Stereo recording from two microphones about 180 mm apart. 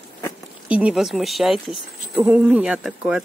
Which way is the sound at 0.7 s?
5° right (ahead or behind).